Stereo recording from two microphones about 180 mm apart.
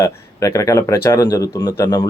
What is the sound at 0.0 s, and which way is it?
Speech, 15° left (ahead or behind).